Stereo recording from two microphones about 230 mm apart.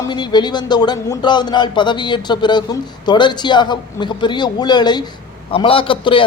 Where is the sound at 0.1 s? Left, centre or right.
Centre.